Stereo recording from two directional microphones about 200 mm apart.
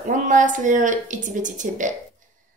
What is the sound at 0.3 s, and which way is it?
A woman's voice, 40° right (ahead or behind).